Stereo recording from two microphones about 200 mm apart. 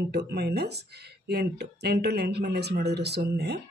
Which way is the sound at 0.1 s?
55° right (ahead or behind).